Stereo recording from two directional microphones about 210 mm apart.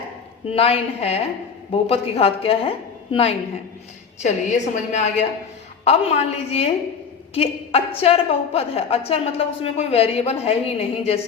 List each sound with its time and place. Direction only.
0.5 s a woman's voice: 25° left (ahead or behind)